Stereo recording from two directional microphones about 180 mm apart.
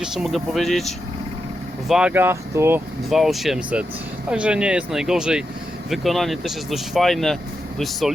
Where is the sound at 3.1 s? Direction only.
Centre (ahead or behind).